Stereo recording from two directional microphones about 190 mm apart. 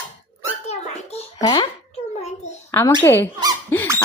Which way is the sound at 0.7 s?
35° left (ahead or behind).